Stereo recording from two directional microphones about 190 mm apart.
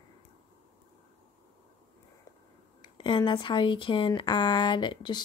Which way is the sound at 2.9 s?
25° left (ahead or behind).